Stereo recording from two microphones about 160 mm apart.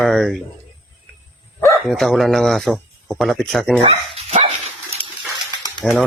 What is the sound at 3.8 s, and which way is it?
Dog, 40° right (ahead or behind).